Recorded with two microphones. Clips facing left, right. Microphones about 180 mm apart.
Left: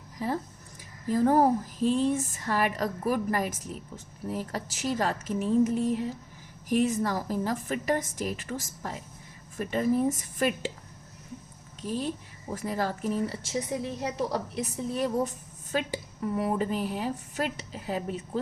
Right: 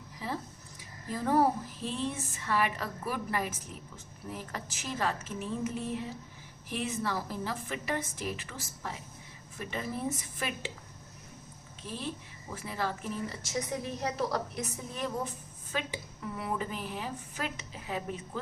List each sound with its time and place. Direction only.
1.1 s a woman's voice: 45° left (ahead or behind)
11.8 s speech: 40° left (ahead or behind)